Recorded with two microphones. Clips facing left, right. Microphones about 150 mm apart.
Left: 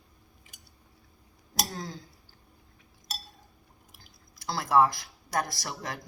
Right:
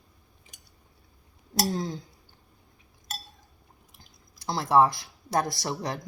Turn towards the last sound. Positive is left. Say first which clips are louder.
# right 6 dB
turn(degrees=-20)  # may be behind; listen again after turning